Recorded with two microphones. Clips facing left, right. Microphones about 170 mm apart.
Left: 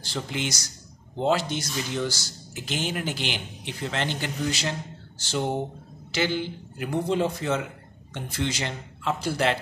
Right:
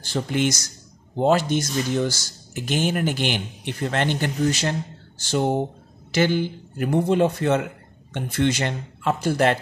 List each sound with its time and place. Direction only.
0.0 s a man's voice: 50° right (ahead or behind)